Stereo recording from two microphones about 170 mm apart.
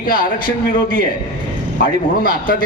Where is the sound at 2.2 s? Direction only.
55° left (ahead or behind).